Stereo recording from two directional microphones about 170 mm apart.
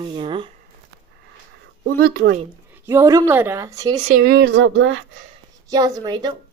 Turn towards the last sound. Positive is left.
turn(degrees=-25)  # may be behind; listen again after turning